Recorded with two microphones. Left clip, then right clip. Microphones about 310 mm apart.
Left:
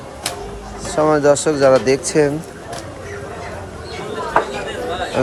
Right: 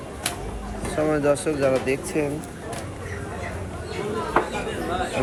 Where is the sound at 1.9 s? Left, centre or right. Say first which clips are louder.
Left 10 dB; left.